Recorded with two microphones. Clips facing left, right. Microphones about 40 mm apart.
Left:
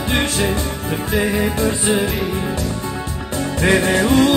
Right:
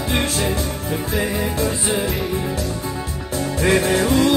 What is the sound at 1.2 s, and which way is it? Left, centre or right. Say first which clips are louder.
Music: left 4 dB; left.